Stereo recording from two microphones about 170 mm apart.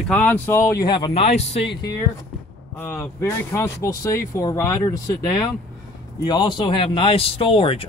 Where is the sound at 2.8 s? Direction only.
15° left (ahead or behind).